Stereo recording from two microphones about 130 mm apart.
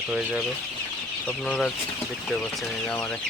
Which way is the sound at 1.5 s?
5° left (ahead or behind).